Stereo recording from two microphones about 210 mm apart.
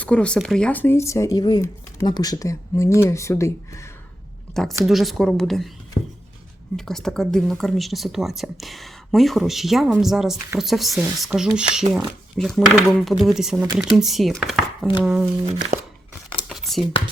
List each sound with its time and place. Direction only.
0.0 s speech: 5° left (ahead or behind)
4.6 s speech: centre (ahead or behind)
6.7 s speech: centre (ahead or behind)
15.4 s speech: 30° right (ahead or behind)
16.5 s a sound: centre (ahead or behind)